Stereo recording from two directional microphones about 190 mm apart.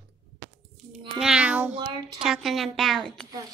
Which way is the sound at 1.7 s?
25° right (ahead or behind).